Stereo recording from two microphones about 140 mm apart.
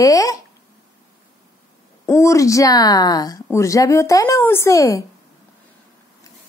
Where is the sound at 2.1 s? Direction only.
20° left (ahead or behind).